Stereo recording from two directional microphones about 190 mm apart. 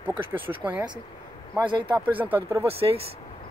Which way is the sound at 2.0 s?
10° right (ahead or behind).